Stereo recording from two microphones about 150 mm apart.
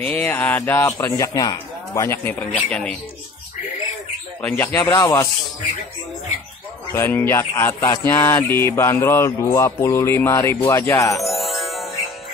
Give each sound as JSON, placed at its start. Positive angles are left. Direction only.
{"t": 0.0, "sound": "speech", "side_deg": 10}
{"t": 4.4, "sound": "speech", "side_deg": 10}
{"t": 6.9, "sound": "speech", "side_deg": 15}
{"t": 11.1, "sound": "chime", "side_deg": 0}